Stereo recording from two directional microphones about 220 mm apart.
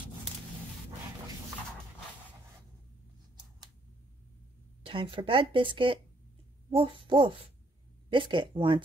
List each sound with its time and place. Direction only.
4.8 s speech: 25° right (ahead or behind)